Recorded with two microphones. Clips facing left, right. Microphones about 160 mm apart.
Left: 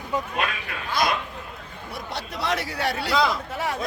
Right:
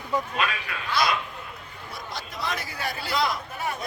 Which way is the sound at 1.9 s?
70° left (ahead or behind).